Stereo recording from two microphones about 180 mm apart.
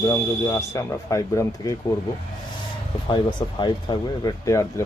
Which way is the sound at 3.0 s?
25° left (ahead or behind).